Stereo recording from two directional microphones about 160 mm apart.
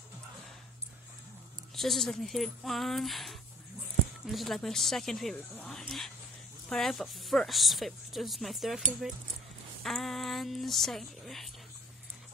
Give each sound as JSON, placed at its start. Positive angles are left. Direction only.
{"t": 1.8, "sound": "speech", "side_deg": 0}
{"t": 9.8, "sound": "speech", "side_deg": 0}